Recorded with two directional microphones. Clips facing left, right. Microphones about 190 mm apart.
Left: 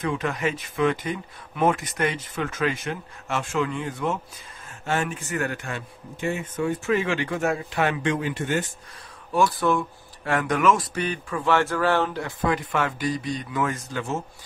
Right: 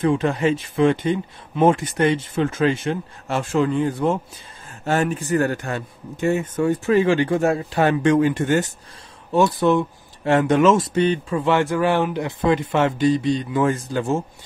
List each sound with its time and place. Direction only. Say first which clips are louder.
0.0 s a man's voice: right 7 dB; 30° right (ahead or behind)
9.3 s speech: right 5 dB; 20° right (ahead or behind)